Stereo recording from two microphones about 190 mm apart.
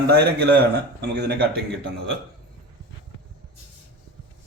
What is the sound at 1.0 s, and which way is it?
Speech, 60° right (ahead or behind).